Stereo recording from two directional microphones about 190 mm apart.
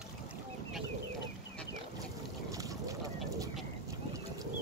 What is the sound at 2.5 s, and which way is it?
Boat, 15° right (ahead or behind).